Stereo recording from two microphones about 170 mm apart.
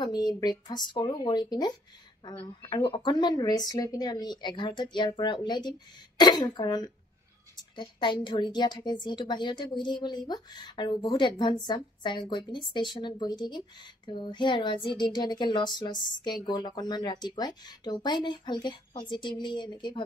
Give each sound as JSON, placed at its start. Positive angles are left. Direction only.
{"t": 0.0, "sound": "a woman's voice", "side_deg": 25}